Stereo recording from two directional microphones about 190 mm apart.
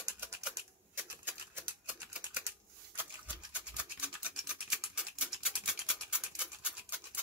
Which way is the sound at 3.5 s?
5° right (ahead or behind).